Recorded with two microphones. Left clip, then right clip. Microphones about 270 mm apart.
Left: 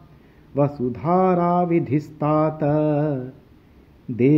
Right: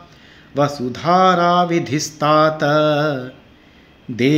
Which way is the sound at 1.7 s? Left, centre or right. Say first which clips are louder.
Right 2 dB; right.